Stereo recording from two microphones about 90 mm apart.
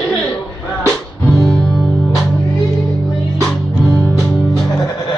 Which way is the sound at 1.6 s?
10° left (ahead or behind).